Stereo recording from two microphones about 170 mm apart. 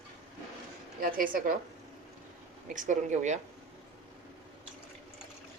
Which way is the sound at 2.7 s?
45° right (ahead or behind).